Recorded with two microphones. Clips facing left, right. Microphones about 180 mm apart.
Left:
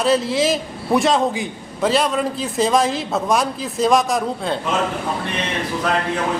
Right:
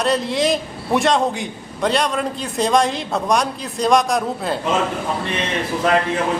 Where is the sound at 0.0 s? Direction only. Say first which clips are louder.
Left 1 dB; centre (ahead or behind).